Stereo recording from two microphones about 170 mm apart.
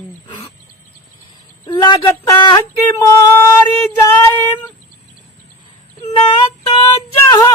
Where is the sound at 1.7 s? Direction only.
25° left (ahead or behind).